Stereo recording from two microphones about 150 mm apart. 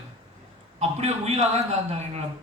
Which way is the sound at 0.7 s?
45° right (ahead or behind).